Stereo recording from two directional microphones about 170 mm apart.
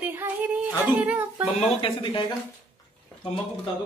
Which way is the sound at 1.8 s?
30° left (ahead or behind).